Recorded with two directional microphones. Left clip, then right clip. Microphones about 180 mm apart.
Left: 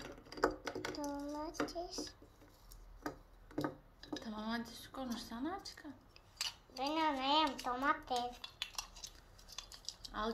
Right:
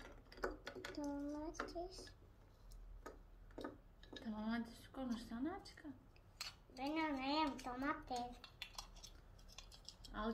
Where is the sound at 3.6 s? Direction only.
20° left (ahead or behind).